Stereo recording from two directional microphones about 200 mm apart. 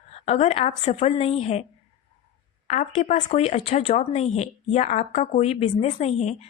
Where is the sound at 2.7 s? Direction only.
35° left (ahead or behind).